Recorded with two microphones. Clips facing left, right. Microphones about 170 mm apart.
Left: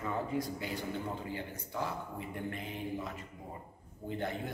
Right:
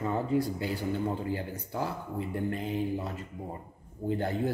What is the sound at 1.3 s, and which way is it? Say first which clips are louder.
Speech: right 6 dB; 35° right (ahead or behind).